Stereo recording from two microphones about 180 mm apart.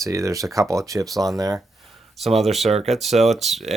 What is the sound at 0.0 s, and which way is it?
Speech, 15° right (ahead or behind).